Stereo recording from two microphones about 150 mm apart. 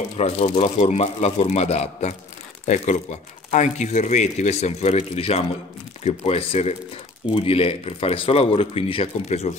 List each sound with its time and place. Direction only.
0.2 s a man's voice: 45° left (ahead or behind)